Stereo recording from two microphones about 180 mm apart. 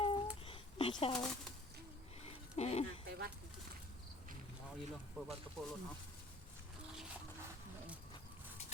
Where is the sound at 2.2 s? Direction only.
35° left (ahead or behind).